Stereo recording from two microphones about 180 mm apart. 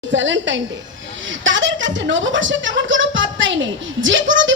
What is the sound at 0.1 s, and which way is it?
A woman's voice, 90° right.